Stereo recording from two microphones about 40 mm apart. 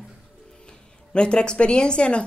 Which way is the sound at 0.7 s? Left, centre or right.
Left.